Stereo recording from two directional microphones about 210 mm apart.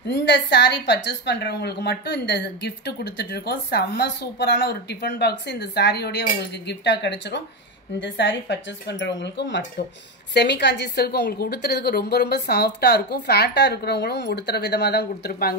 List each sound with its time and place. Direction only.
0.0 s a woman's voice: 55° left (ahead or behind)